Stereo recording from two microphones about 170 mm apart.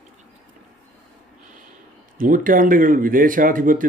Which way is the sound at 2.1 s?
55° right (ahead or behind).